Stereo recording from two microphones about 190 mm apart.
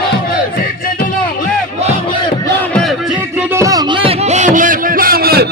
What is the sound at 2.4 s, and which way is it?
Music, 5° left (ahead or behind).